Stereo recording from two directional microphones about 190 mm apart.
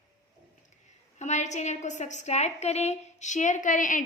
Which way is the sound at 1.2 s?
35° left (ahead or behind).